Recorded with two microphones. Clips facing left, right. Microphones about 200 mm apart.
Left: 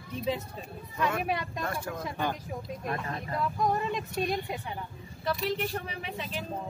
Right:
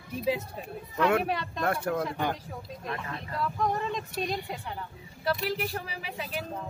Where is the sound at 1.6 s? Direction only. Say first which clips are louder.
Right 6 dB; 65° right (ahead or behind).